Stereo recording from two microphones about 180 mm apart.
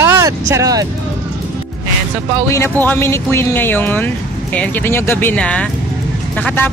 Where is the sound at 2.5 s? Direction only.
10° left (ahead or behind).